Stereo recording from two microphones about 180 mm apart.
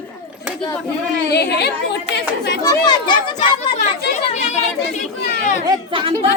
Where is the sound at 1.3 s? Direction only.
65° left (ahead or behind).